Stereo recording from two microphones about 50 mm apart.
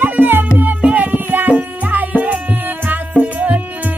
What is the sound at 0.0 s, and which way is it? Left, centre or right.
Music, right.